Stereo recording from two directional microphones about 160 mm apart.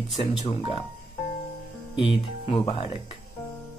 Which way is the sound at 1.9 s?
30° left (ahead or behind).